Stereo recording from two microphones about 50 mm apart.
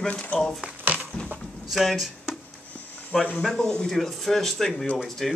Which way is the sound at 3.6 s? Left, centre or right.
Centre.